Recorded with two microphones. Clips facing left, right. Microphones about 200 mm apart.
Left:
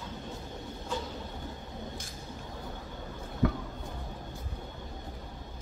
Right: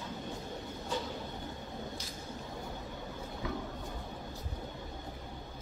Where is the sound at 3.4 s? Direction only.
60° left (ahead or behind).